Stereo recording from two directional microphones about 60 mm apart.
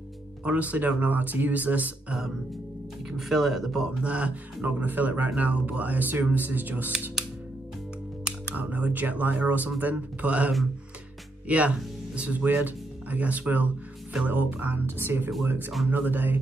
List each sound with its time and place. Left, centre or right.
0.4 s speech: right
3.1 s speech: centre
4.0 s speech: right
8.5 s speech: right